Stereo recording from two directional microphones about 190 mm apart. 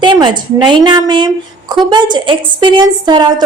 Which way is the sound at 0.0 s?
25° right (ahead or behind).